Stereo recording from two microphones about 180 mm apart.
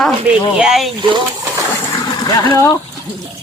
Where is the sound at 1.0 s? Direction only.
25° right (ahead or behind).